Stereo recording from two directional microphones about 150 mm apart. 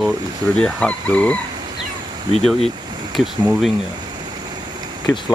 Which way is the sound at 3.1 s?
Centre (ahead or behind).